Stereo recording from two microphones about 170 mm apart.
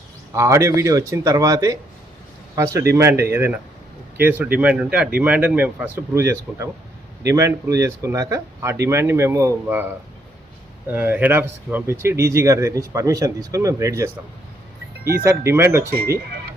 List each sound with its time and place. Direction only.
0.3 s speech: 15° right (ahead or behind)
2.9 s speech: 15° right (ahead or behind)
15.2 s speech: 15° right (ahead or behind)